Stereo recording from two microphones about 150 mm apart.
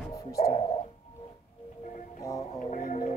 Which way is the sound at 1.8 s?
55° left (ahead or behind).